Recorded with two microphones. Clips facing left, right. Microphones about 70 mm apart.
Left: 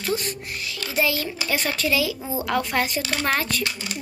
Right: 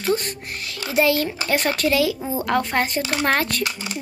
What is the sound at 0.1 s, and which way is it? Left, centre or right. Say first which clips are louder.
Speech: right 4 dB; right.